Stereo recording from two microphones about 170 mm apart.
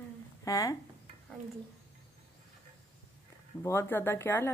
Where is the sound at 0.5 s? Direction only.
20° left (ahead or behind).